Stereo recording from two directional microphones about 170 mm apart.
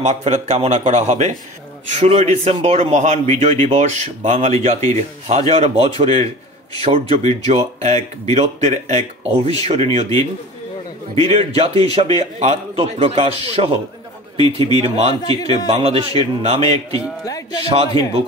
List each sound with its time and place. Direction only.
0.0 s a man's voice: 40° right (ahead or behind)
11.2 s a man's voice: 35° right (ahead or behind)
15.2 s a man's voice: 25° left (ahead or behind)
15.7 s a man's voice: 35° right (ahead or behind)
16.9 s a man's voice: 20° left (ahead or behind)